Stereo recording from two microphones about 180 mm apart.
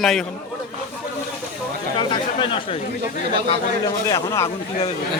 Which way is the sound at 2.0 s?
25° left (ahead or behind).